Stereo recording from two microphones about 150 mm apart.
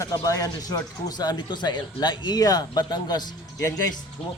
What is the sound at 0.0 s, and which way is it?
Speech, 25° left (ahead or behind).